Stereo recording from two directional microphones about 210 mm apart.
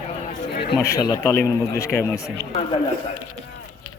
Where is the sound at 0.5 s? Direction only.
50° left (ahead or behind).